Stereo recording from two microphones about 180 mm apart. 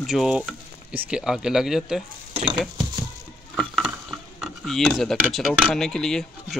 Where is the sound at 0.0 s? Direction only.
Centre (ahead or behind).